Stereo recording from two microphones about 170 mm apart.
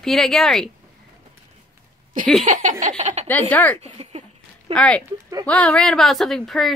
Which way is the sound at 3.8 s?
35° right (ahead or behind).